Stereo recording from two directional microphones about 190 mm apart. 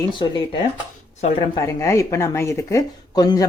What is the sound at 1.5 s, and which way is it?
Speech, 15° left (ahead or behind).